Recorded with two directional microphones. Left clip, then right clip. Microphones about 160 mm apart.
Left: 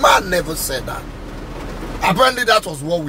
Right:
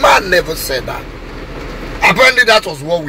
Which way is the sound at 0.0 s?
20° left (ahead or behind).